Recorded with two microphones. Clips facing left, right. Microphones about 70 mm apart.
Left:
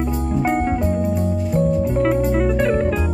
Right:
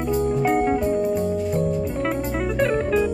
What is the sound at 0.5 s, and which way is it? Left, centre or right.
Music, centre.